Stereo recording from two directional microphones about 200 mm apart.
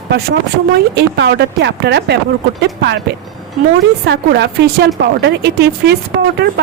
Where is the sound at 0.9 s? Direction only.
55° right (ahead or behind).